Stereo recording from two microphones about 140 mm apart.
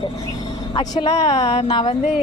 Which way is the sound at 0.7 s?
30° left (ahead or behind).